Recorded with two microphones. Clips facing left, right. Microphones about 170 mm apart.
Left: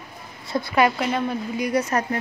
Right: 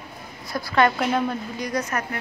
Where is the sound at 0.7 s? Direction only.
5° left (ahead or behind).